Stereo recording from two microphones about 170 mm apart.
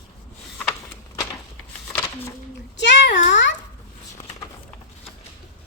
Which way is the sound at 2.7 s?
90° left.